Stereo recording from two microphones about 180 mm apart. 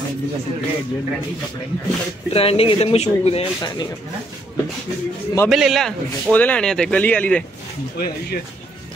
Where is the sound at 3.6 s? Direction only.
25° left (ahead or behind).